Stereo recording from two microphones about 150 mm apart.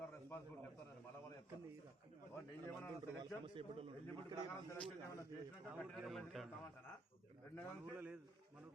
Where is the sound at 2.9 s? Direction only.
30° right (ahead or behind).